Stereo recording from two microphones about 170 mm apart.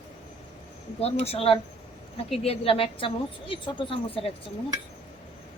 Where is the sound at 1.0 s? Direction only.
35° left (ahead or behind).